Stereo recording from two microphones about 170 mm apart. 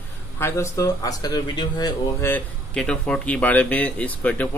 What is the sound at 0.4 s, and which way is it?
Speech, 15° left (ahead or behind).